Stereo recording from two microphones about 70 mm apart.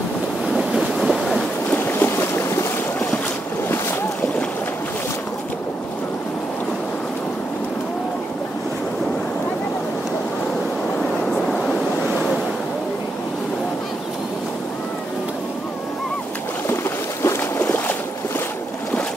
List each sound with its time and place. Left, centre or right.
0.5 s ocean: centre
1.7 s boat: left
16.6 s boat: left